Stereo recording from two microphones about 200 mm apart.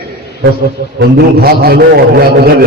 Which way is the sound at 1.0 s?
50° right (ahead or behind).